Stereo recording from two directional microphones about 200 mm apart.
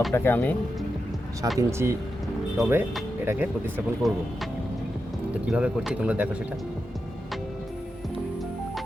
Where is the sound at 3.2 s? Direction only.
10° right (ahead or behind).